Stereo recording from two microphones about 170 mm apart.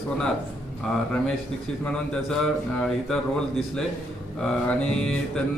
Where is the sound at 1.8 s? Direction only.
5° left (ahead or behind).